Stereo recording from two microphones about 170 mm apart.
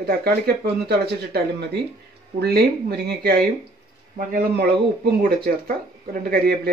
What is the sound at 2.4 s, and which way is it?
Speech, 70° right (ahead or behind).